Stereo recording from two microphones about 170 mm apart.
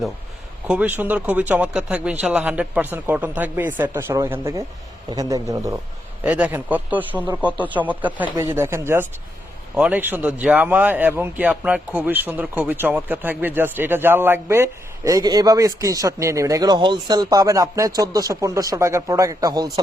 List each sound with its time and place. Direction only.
0.7 s a man's voice: 10° right (ahead or behind)
6.2 s speech: 10° right (ahead or behind)